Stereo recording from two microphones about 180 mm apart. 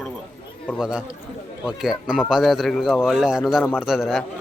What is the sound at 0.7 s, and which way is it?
Speech, 5° right (ahead or behind).